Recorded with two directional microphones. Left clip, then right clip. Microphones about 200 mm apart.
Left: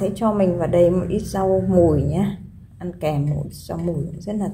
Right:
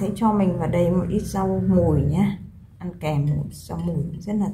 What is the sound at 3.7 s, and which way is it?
Speech, 15° left (ahead or behind).